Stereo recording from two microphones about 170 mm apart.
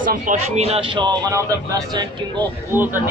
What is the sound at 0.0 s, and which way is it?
Speech, 50° right (ahead or behind).